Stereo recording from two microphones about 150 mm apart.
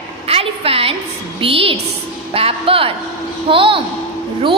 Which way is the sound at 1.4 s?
35° right (ahead or behind).